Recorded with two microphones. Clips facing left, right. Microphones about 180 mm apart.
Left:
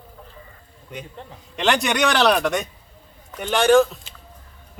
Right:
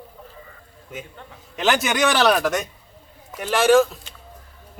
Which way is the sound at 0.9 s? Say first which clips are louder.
Left 1 dB; 5° right (ahead or behind).